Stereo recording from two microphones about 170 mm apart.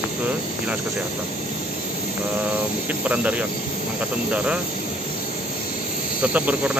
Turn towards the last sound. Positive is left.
turn(degrees=-10)  # may be behind; listen again after turning